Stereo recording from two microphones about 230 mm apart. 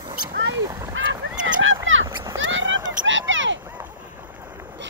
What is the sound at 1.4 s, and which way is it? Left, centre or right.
Rowboat, right.